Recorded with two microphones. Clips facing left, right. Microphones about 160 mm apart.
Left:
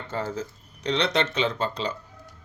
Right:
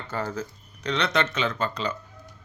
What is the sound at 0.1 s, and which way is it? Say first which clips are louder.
Speech: even; 25° left (ahead or behind).